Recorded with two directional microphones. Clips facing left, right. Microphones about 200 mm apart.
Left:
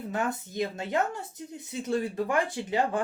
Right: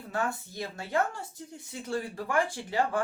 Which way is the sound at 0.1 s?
20° left (ahead or behind).